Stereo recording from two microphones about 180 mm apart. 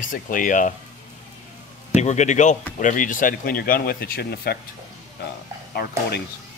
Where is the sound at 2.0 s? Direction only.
40° left (ahead or behind); by 4.6 s 60° left (ahead or behind).